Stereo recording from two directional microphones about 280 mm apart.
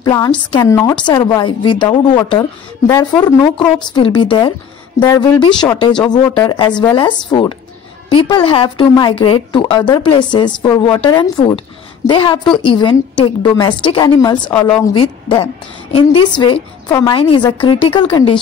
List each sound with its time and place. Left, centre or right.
0.0 s a woman's voice: centre